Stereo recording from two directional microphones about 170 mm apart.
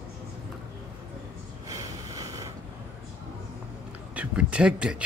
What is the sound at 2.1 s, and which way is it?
Vehicle, 20° right (ahead or behind).